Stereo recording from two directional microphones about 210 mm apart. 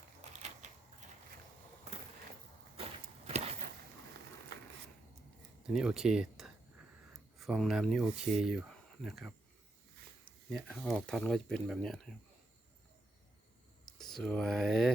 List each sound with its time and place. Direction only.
2.7 s walk: 30° right (ahead or behind)
5.6 s speech: 5° right (ahead or behind)
14.0 s speech: centre (ahead or behind)